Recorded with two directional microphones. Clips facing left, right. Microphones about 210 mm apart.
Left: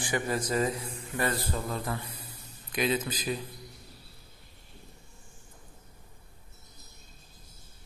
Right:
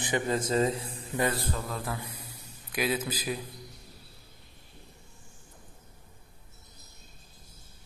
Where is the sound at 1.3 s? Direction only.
Centre (ahead or behind).